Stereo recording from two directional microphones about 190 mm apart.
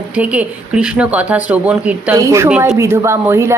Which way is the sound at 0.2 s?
5° right (ahead or behind).